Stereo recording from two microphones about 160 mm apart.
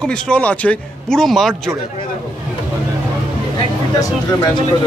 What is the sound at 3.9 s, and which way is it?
Speech, 20° left (ahead or behind).